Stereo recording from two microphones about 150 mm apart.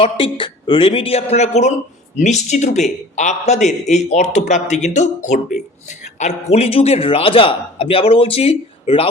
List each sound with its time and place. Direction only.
0.0 s a man's voice: 35° left (ahead or behind)